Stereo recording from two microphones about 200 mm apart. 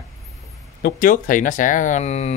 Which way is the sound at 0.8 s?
45° left (ahead or behind).